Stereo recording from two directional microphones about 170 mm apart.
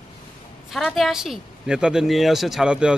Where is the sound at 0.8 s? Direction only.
Centre (ahead or behind).